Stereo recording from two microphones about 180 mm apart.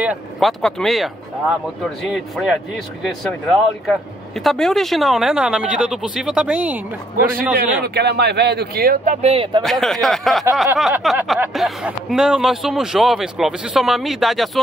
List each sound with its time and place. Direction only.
0.0 s speech: 5° right (ahead or behind)
2.1 s speech: centre (ahead or behind)
7.8 s speech: 65° right (ahead or behind); by 9.6 s 30° right (ahead or behind)
9.6 s speech: centre (ahead or behind)